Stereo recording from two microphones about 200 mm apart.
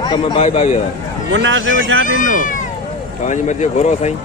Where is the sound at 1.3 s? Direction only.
70° right (ahead or behind).